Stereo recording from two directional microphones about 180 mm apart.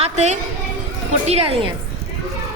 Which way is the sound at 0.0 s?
40° right (ahead or behind).